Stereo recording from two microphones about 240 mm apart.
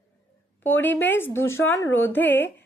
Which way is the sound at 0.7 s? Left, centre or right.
Centre.